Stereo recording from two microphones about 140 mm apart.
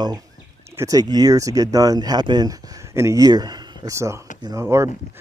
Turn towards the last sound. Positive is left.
turn(degrees=-20)  # may be behind; listen again after turning